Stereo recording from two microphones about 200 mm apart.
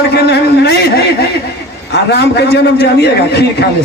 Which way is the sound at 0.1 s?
55° left (ahead or behind).